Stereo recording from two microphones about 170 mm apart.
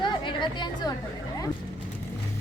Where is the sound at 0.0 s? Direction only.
25° left (ahead or behind).